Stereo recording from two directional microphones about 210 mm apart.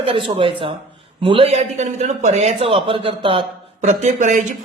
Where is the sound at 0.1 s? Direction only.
25° right (ahead or behind).